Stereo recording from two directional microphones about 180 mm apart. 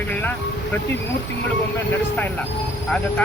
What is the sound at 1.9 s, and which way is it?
Speech, 10° left (ahead or behind).